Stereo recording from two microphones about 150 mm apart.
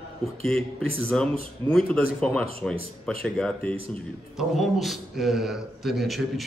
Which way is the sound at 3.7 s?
40° right (ahead or behind).